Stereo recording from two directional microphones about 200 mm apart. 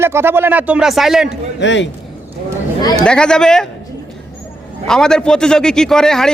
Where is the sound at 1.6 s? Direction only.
65° left (ahead or behind).